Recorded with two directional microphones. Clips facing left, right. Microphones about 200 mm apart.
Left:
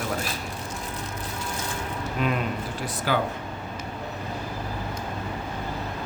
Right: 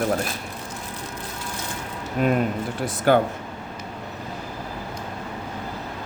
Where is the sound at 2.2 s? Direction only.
45° right (ahead or behind).